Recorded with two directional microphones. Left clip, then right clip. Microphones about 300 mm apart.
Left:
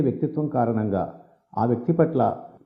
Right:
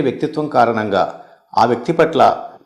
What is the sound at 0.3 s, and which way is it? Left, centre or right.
A man's voice, centre.